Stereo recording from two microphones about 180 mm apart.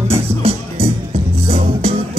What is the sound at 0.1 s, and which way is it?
Music, 30° right (ahead or behind).